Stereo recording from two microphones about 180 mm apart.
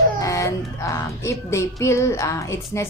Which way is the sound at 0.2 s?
15° left (ahead or behind).